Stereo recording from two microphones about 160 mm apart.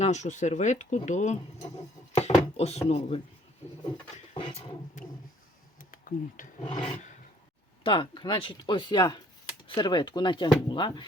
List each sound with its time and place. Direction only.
0.0 s speech: 45° left (ahead or behind)
4.4 s speech: 35° left (ahead or behind)
5.9 s speech: 55° left (ahead or behind)
6.8 s roar: 45° left (ahead or behind)
7.9 s speech: 30° left (ahead or behind)